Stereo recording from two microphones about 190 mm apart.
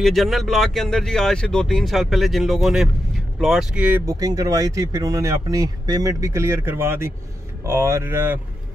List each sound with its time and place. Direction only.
0.0 s speech: centre (ahead or behind)